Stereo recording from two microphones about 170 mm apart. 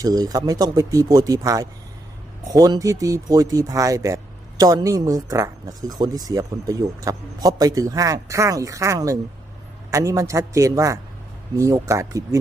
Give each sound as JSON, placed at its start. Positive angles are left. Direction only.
{"t": 0.0, "sound": "speech", "side_deg": -20}